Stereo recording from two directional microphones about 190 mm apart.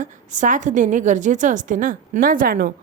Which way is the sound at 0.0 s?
40° right (ahead or behind).